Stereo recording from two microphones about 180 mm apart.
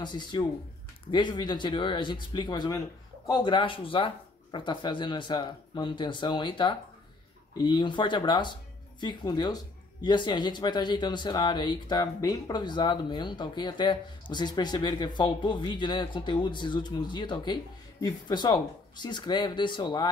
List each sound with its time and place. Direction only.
0.0 s speech: 25° left (ahead or behind)